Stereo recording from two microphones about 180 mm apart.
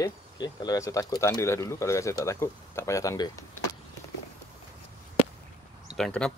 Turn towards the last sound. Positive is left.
turn(degrees=5)  # may be behind; listen again after turning